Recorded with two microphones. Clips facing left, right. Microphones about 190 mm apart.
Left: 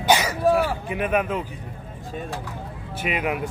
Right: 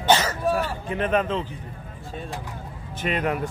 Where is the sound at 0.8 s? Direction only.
10° left (ahead or behind).